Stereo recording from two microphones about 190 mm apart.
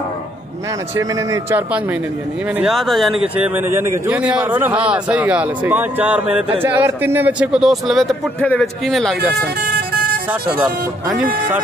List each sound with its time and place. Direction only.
0.9 s a man's voice: 15° right (ahead or behind)
2.6 s a man's voice: centre (ahead or behind)
11.1 s speech: 45° right (ahead or behind)